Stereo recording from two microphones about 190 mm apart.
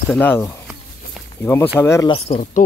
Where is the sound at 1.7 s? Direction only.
15° left (ahead or behind).